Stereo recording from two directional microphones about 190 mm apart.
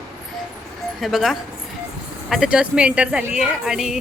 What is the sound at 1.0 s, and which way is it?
A woman's voice, centre (ahead or behind).